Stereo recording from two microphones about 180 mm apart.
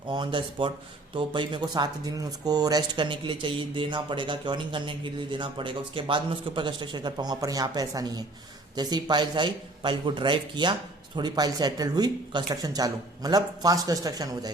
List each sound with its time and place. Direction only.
0.1 s speech: 25° right (ahead or behind)